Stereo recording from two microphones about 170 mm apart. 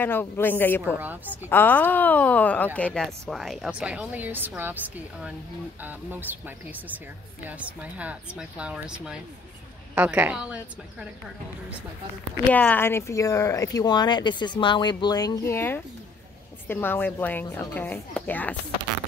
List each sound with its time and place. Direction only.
0.0 s a woman's voice: 10° left (ahead or behind)
0.9 s speech: 10° right (ahead or behind)
1.5 s speech: 10° left (ahead or behind); by 11.1 s 5° right (ahead or behind)
12.5 s a woman's voice: 10° left (ahead or behind)